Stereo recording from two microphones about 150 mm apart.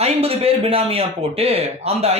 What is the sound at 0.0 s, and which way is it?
Speech, 40° right (ahead or behind).